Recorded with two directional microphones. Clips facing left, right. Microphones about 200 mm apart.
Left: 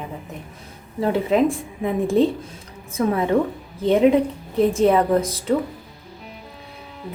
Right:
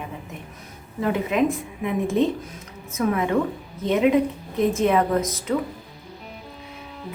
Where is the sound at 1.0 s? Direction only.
30° left (ahead or behind).